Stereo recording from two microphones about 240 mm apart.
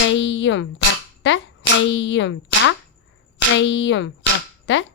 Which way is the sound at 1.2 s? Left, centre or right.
Left.